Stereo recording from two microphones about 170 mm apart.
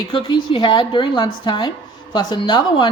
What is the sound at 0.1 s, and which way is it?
Speech, 30° left (ahead or behind).